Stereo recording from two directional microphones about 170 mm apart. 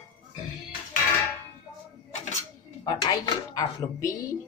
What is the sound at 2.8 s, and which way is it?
Speech, 25° left (ahead or behind).